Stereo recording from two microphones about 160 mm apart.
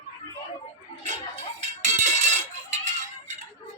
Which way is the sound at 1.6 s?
45° right (ahead or behind).